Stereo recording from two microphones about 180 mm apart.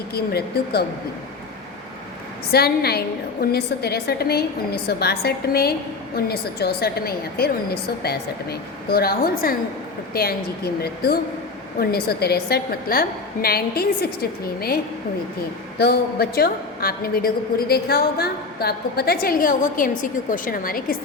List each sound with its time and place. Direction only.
0.1 s a woman's voice: 60° left (ahead or behind)
2.5 s a woman's voice: 60° left (ahead or behind)
15.8 s a woman's voice: 60° left (ahead or behind)